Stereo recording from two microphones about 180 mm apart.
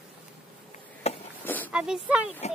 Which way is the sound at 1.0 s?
35° left (ahead or behind).